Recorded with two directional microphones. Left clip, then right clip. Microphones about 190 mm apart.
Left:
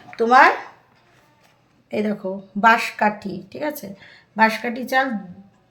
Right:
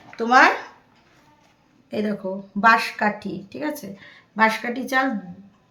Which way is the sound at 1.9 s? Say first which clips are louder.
Left 2 dB; 5° left (ahead or behind).